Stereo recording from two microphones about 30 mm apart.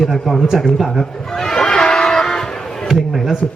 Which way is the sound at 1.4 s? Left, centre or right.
Centre.